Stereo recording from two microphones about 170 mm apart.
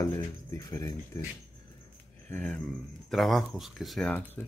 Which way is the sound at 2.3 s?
10° left (ahead or behind).